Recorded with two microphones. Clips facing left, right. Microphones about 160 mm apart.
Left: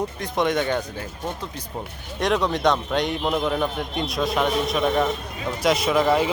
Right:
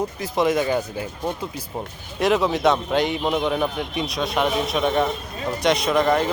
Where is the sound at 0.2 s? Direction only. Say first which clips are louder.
Right 2 dB; 5° right (ahead or behind).